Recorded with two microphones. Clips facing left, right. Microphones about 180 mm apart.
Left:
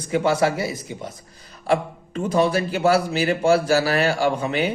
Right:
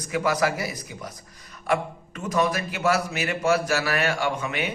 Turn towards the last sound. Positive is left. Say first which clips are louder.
# left 6 dB
turn(degrees=35)  # may be behind; listen again after turning